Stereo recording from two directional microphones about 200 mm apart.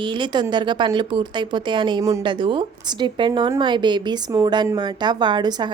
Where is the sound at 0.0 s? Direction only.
25° right (ahead or behind).